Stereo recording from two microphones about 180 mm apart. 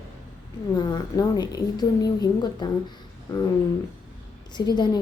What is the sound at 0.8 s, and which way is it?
A woman's voice, 25° left (ahead or behind).